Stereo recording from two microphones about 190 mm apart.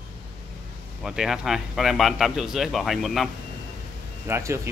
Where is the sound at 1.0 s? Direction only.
Centre (ahead or behind).